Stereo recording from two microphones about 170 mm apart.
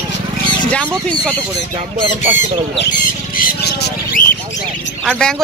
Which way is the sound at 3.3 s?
60° left (ahead or behind).